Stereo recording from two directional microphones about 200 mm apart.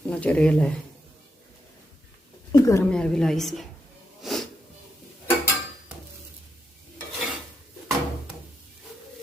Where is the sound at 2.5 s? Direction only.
15° left (ahead or behind).